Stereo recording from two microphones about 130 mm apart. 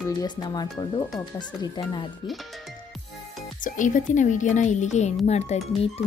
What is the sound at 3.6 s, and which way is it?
Speech, 80° left.